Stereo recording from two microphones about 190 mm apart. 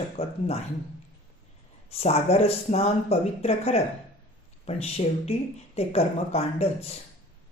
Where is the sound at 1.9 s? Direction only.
35° left (ahead or behind).